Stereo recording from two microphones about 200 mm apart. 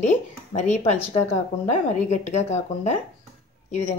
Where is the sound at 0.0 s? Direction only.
35° left (ahead or behind).